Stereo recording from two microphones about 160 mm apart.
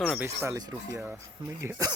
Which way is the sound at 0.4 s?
15° right (ahead or behind).